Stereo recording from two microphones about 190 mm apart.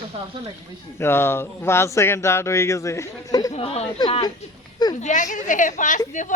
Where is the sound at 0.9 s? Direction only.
10° left (ahead or behind).